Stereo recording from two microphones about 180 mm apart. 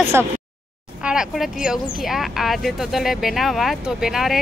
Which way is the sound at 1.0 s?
5° right (ahead or behind).